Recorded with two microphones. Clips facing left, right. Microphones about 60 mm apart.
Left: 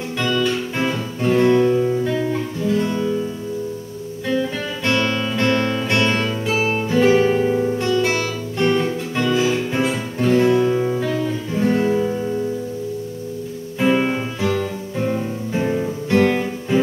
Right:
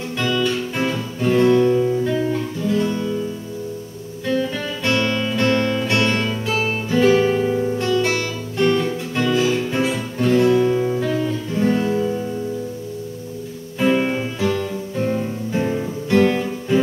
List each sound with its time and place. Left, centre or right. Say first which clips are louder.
0.4 s music: even; centre
2.3 s guitar: even; centre
4.8 s music: even; left
5.9 s guitar: left 1 dB; centre
8.5 s music: right 1 dB; centre
13.7 s music: even; centre